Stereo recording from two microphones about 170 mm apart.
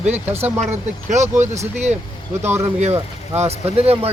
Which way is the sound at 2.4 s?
15° right (ahead or behind).